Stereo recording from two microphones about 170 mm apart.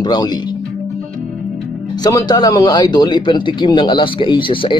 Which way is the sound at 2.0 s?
20° left (ahead or behind).